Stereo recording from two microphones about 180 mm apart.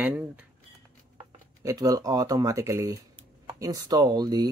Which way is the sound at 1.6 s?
20° right (ahead or behind).